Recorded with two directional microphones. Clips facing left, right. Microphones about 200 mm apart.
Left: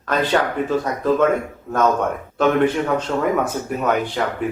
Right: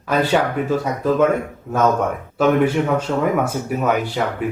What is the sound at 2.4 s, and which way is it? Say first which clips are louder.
Speech: right 1 dB; 10° right (ahead or behind).